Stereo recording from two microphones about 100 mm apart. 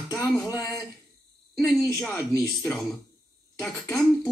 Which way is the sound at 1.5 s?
Centre (ahead or behind).